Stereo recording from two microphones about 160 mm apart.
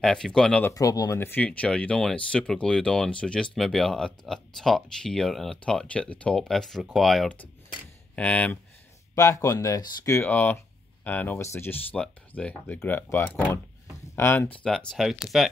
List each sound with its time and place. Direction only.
0.0 s speech: 5° left (ahead or behind)
0.7 s speech: 20° left (ahead or behind)
9.1 s speech: 20° left (ahead or behind); by 15.5 s centre (ahead or behind)